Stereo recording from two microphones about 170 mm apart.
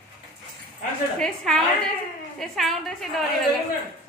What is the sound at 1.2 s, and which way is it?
A woman's voice, 5° left (ahead or behind).